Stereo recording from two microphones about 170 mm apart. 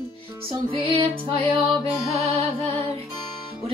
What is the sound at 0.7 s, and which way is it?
Music, 30° right (ahead or behind).